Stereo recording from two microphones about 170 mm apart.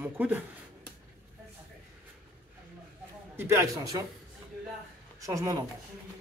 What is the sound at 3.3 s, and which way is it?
Speech, 15° right (ahead or behind).